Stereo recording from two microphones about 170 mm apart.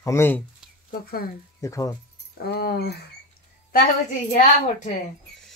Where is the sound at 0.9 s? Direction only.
60° left (ahead or behind).